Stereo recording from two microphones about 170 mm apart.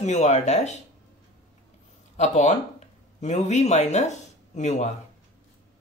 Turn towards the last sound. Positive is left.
turn(degrees=45)  # may be behind; listen again after turning